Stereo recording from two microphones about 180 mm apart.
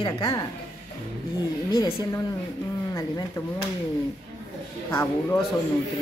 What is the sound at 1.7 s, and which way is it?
Speech, 15° left (ahead or behind).